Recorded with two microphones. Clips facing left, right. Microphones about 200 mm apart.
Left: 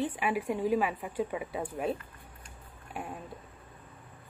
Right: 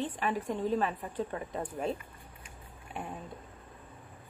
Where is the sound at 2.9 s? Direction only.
5° left (ahead or behind).